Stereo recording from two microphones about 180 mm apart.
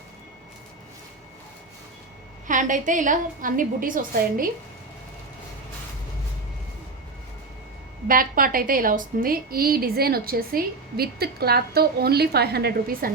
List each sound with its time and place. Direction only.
2.5 s a woman's voice: 45° right (ahead or behind)
8.0 s a woman's voice: 50° right (ahead or behind)